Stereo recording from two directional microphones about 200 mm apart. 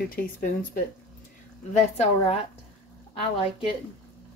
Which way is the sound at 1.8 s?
35° left (ahead or behind).